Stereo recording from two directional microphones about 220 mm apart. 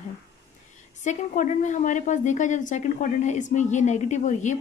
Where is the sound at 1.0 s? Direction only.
35° left (ahead or behind).